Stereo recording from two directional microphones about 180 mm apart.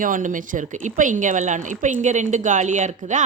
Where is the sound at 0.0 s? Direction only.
45° right (ahead or behind).